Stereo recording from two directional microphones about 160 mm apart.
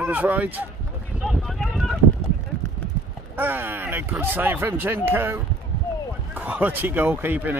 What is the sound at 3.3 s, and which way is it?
Speech, 10° right (ahead or behind).